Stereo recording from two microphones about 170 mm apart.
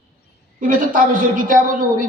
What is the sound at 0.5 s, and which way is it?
A woman's voice, 55° right (ahead or behind).